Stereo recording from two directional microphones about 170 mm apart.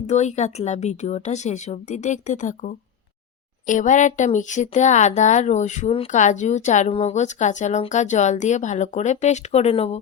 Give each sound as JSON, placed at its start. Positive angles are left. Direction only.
{"t": 0.1, "sound": "speech", "side_deg": 40}